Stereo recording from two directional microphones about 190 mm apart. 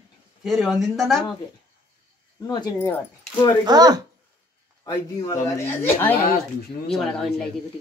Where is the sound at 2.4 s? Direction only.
20° left (ahead or behind).